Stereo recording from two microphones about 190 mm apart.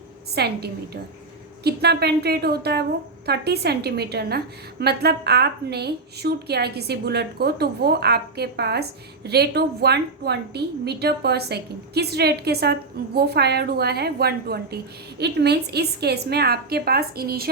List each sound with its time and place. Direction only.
0.3 s a woman's voice: 60° right (ahead or behind)